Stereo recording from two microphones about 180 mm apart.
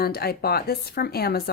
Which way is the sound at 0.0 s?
60° left (ahead or behind).